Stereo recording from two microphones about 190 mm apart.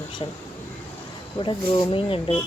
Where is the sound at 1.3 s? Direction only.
25° left (ahead or behind).